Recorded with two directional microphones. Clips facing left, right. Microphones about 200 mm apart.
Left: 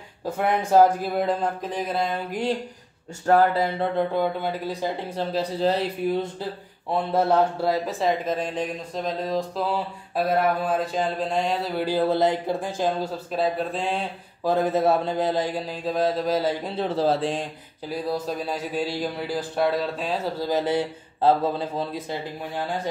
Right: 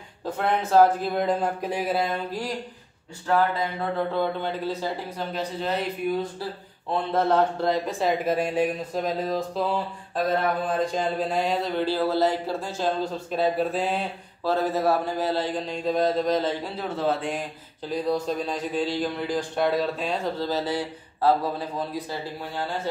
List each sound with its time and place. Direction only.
0.2 s speech: 10° left (ahead or behind)
1.1 s a man's voice: centre (ahead or behind)
3.3 s speech: 40° left (ahead or behind)
4.1 s speech: 10° left (ahead or behind)
5.1 s speech: 35° left (ahead or behind)
6.9 s speech: 10° left (ahead or behind)
8.3 s speech: 10° right (ahead or behind)
9.7 s a man's voice: 10° left (ahead or behind)
11.8 s speech: 15° left (ahead or behind)
13.3 s a man's voice: centre (ahead or behind)
14.4 s speech: 15° left (ahead or behind)
16.6 s speech: 30° left (ahead or behind)
17.8 s a man's voice: 5° left (ahead or behind)
20.3 s a man's voice: 15° left (ahead or behind)